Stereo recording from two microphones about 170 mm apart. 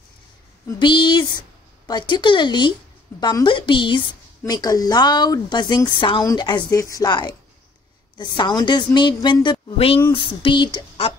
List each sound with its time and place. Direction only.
0.7 s a woman's voice: 25° left (ahead or behind)